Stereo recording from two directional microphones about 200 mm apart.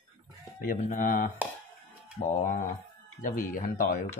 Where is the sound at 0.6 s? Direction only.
45° left (ahead or behind).